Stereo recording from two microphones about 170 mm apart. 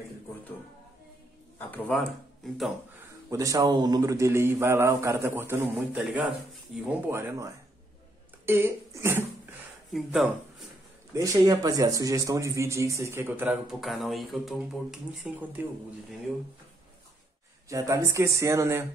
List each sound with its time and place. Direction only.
1.6 s speech: 5° left (ahead or behind)
3.3 s speech: 20° right (ahead or behind)
6.1 s speech: 5° right (ahead or behind)
7.1 s speech: 15° right (ahead or behind)
9.9 s speech: centre (ahead or behind)
11.1 s speech: 20° right (ahead or behind)
17.6 s speech: 20° right (ahead or behind)